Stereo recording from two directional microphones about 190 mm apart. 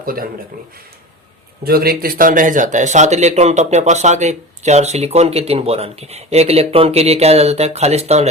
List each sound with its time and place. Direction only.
0.0 s speech: 50° right (ahead or behind)
1.6 s speech: 55° right (ahead or behind); by 8.3 s 35° right (ahead or behind)